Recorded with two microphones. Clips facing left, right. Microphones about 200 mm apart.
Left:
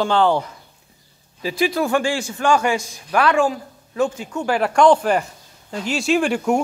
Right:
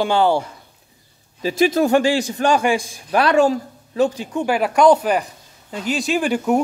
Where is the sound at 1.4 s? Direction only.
45° right (ahead or behind).